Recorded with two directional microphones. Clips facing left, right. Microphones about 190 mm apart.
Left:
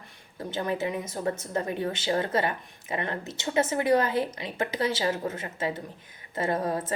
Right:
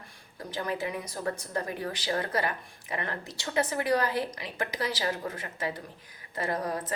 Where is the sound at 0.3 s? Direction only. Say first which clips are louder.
Left 3 dB; 25° left (ahead or behind).